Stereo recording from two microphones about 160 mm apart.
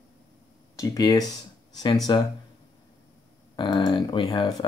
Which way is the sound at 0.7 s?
20° left (ahead or behind).